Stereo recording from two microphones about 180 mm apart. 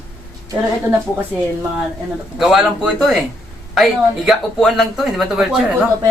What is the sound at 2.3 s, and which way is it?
Speech, centre (ahead or behind).